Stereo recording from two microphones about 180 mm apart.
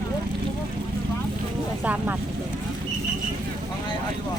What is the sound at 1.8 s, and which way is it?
Speech, 10° right (ahead or behind).